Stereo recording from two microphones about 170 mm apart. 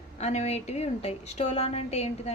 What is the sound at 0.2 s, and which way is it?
A woman's voice, 40° left (ahead or behind).